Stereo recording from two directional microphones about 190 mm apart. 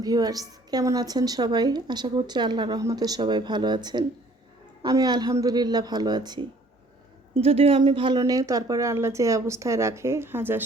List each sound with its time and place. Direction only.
0.0 s a woman's voice: 20° right (ahead or behind)